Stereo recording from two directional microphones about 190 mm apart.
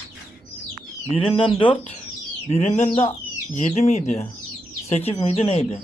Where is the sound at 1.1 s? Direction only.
30° left (ahead or behind).